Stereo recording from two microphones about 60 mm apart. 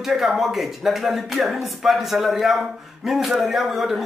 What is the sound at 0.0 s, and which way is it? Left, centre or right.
Speech, centre.